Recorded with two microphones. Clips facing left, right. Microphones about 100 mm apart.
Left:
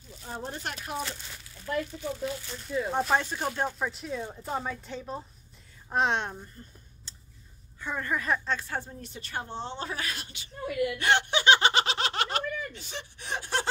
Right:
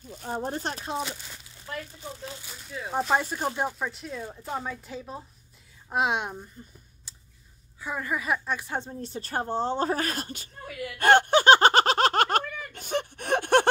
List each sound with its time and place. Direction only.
0.1 s a woman's voice: 50° right (ahead or behind); by 1.1 s 25° right (ahead or behind)
2.6 s speech: 5° right (ahead or behind)
3.7 s speech: centre (ahead or behind)
7.1 s a sound: 10° right (ahead or behind)
7.8 s a woman's voice: 5° right (ahead or behind); by 10.5 s 45° right (ahead or behind)
11.0 s a sound: 45° right (ahead or behind)